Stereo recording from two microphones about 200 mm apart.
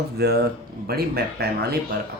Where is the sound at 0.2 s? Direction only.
50° right (ahead or behind).